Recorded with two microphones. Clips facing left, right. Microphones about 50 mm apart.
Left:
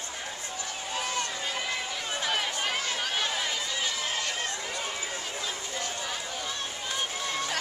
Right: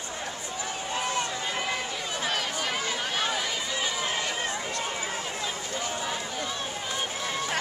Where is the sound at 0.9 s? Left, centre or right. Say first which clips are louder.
Right 2 dB; centre.